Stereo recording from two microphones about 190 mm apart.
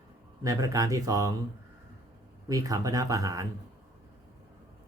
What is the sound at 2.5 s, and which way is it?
Speech, 20° right (ahead or behind).